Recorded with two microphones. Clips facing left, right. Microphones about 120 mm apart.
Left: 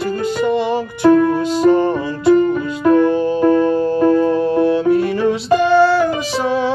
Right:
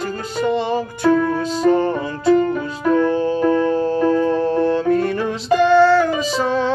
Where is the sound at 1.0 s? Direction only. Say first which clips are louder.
Left 5 dB; 15° left (ahead or behind).